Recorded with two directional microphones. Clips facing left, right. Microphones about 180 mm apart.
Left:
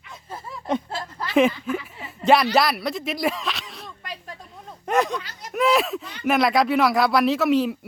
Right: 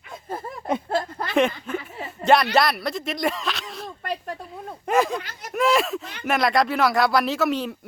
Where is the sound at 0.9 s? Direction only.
55° right (ahead or behind).